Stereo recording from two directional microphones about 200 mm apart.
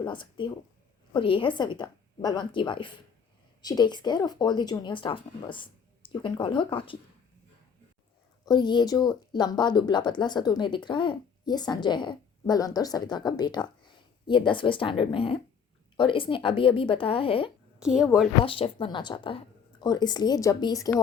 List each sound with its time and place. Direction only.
0.0 s speech: 25° left (ahead or behind)
8.4 s speech: 20° left (ahead or behind)
17.7 s a woman's voice: 5° right (ahead or behind)
18.4 s speech: 25° left (ahead or behind)